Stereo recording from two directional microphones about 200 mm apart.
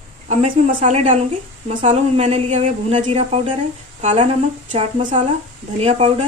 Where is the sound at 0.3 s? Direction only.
40° right (ahead or behind).